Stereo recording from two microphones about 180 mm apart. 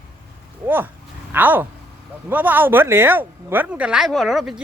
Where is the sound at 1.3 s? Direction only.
10° right (ahead or behind).